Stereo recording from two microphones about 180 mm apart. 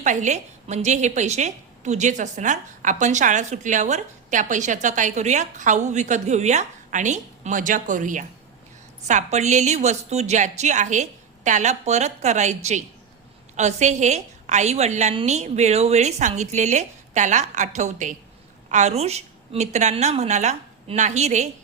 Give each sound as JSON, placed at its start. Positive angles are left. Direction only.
{"t": 0.0, "sound": "a woman's voice", "side_deg": -40}